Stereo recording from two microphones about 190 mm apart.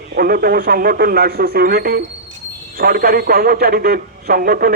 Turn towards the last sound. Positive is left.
turn(degrees=-50)  # may be behind; listen again after turning